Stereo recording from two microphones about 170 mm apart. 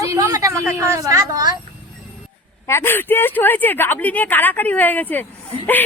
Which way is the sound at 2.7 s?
15° left (ahead or behind).